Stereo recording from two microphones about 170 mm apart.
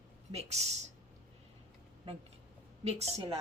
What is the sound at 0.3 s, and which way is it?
Speech, 40° right (ahead or behind).